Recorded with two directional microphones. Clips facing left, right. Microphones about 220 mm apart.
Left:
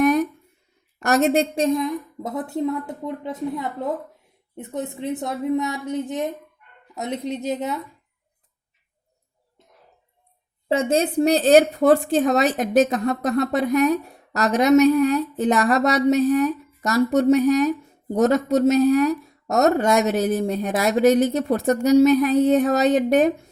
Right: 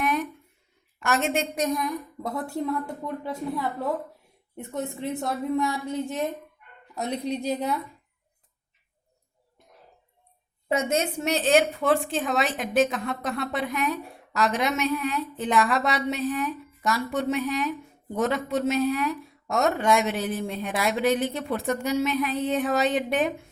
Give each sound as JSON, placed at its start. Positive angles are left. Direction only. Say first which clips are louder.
{"t": 0.0, "sound": "a sound", "louder": "left 9 dB", "side_deg": 40}
{"t": 0.9, "sound": "a woman's voice", "louder": "left 7 dB", "side_deg": 40}
{"t": 10.7, "sound": "speech", "louder": "left 5 dB", "side_deg": 30}